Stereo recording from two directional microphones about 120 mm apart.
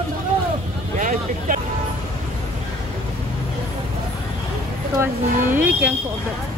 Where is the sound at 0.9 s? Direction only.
90° right.